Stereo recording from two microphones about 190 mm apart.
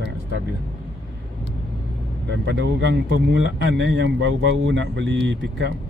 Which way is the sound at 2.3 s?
65° right (ahead or behind).